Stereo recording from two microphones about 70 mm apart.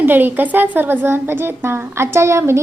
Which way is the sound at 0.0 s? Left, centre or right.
Right.